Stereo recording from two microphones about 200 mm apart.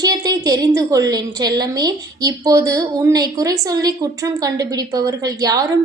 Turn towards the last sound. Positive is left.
turn(degrees=-20)  # may be behind; listen again after turning